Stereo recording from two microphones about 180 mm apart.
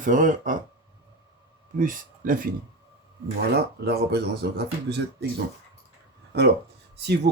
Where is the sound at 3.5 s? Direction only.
65° right (ahead or behind).